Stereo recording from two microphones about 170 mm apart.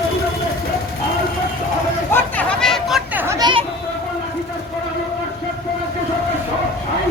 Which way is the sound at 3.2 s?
20° right (ahead or behind).